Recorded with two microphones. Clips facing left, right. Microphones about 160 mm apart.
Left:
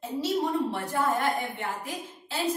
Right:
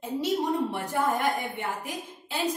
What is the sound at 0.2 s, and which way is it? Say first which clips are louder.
A woman's voice: even; 10° right (ahead or behind).